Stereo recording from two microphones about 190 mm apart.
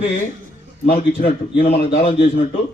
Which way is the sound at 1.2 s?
45° left (ahead or behind).